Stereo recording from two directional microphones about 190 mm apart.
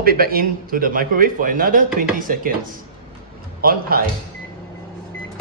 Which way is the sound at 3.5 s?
50° right (ahead or behind).